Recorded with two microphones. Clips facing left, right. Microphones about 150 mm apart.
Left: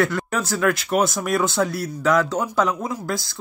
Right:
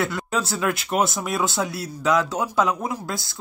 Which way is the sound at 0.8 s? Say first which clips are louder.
Left 2 dB; centre (ahead or behind).